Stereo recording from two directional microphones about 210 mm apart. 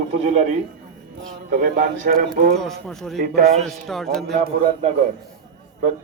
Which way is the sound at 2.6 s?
Centre (ahead or behind).